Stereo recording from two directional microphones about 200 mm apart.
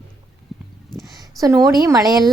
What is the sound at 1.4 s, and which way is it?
Speech, 15° right (ahead or behind).